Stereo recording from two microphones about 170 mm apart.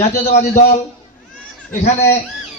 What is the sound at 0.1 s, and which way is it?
Speech, 45° left (ahead or behind).